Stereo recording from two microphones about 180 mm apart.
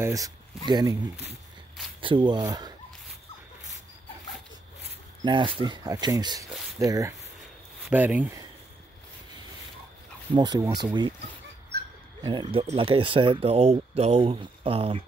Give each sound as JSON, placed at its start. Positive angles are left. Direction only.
{"t": 0.0, "sound": "speech", "side_deg": -20}
{"t": 5.2, "sound": "speech", "side_deg": -30}
{"t": 10.3, "sound": "speech", "side_deg": -25}
{"t": 11.7, "sound": "dog", "side_deg": -65}
{"t": 12.3, "sound": "speech", "side_deg": -30}